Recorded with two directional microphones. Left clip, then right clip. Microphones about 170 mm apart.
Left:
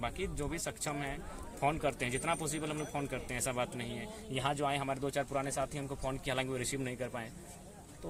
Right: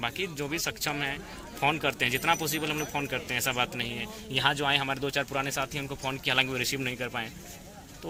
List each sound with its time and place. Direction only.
0.0 s speech: 20° left (ahead or behind)